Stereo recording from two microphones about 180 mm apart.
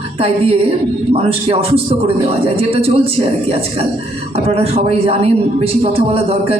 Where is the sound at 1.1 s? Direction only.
35° right (ahead or behind).